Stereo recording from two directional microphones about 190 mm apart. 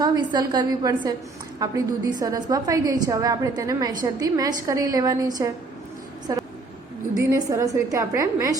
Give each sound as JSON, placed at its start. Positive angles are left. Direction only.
{"t": 0.0, "sound": "a woman's voice", "side_deg": -20}